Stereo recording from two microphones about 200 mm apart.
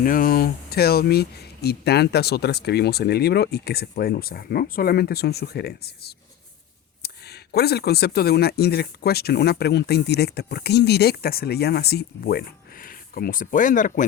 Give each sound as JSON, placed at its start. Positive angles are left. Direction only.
{"t": 0.0, "sound": "speech", "side_deg": 45}